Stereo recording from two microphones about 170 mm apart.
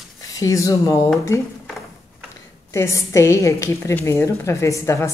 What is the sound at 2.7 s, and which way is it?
A woman's voice, 15° left (ahead or behind).